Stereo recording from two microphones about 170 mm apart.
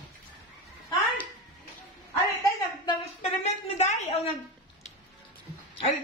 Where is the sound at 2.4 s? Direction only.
25° left (ahead or behind).